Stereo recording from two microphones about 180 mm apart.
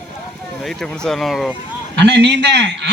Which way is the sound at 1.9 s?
75° right (ahead or behind).